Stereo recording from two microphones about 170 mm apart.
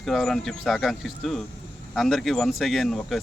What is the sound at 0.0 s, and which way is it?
Speech, centre (ahead or behind).